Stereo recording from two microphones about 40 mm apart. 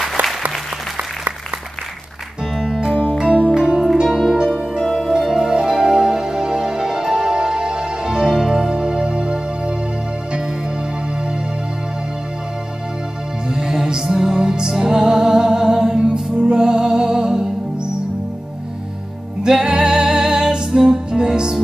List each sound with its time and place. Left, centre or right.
0.2 s applause: right
2.6 s music: centre
3.3 s music: centre
4.1 s harp: centre
4.4 s music: centre
13.5 s music: centre
19.4 s music: centre